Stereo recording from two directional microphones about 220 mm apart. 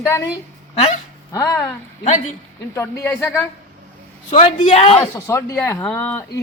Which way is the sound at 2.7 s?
10° left (ahead or behind).